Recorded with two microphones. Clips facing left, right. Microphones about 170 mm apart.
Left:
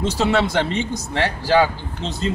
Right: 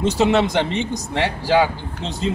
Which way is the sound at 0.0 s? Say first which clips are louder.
Right 2 dB; 15° right (ahead or behind).